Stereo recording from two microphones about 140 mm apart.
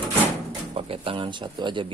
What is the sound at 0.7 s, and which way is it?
Speech, 45° right (ahead or behind).